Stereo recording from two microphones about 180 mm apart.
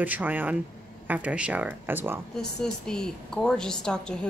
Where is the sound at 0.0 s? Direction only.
10° right (ahead or behind).